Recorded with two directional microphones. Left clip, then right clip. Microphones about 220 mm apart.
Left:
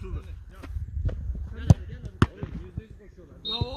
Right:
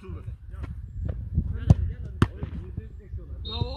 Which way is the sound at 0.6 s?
45° left (ahead or behind).